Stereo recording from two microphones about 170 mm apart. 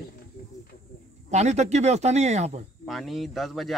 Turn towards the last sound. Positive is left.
turn(degrees=0)  # may be behind; listen again after turning